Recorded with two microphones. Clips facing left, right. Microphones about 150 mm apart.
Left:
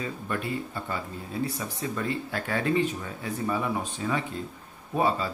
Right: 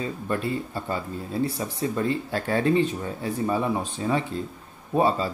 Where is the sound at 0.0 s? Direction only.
30° right (ahead or behind).